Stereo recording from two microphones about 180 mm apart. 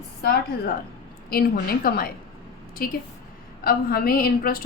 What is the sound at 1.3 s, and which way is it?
A woman's voice, 55° left (ahead or behind).